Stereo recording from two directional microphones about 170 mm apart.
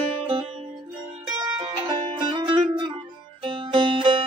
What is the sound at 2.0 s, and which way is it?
Music, 30° right (ahead or behind).